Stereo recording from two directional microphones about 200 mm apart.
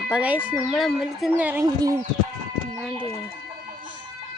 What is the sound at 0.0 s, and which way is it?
Speech, 5° right (ahead or behind).